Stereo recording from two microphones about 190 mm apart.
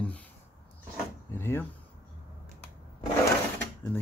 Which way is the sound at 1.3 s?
10° left (ahead or behind).